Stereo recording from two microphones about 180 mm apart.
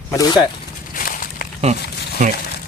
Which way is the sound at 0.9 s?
50° left (ahead or behind).